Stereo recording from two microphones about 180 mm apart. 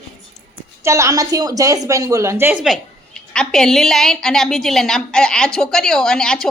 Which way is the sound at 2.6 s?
Centre (ahead or behind).